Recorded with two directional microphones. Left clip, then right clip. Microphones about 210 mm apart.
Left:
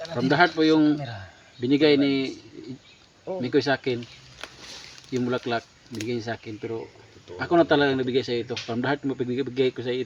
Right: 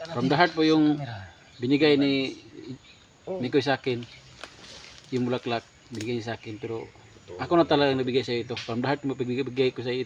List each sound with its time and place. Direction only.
0.2 s speech: 5° left (ahead or behind)
0.9 s speech: 50° left (ahead or behind)
1.6 s speech: 5° left (ahead or behind)
3.4 s speech: centre (ahead or behind)
4.4 s a sound: 50° left (ahead or behind)
5.1 s speech: 5° left (ahead or behind)